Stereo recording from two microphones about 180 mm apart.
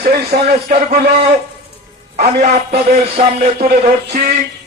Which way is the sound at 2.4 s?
60° right (ahead or behind).